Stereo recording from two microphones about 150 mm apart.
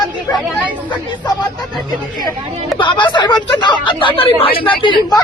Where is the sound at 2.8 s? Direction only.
30° left (ahead or behind).